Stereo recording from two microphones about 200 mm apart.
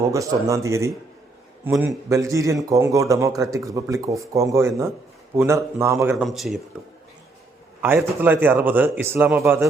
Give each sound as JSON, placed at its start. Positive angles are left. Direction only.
{"t": 0.1, "sound": "speech", "side_deg": -15}
{"t": 6.2, "sound": "speech", "side_deg": 0}
{"t": 7.8, "sound": "speech", "side_deg": -10}